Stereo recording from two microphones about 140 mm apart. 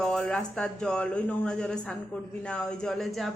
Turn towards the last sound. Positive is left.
turn(degrees=0)  # may be behind; listen again after turning